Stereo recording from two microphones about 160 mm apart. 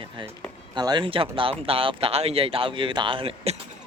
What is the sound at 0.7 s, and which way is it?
Speech, 30° right (ahead or behind).